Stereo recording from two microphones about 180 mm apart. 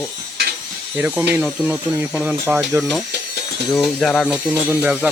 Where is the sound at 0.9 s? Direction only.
10° right (ahead or behind).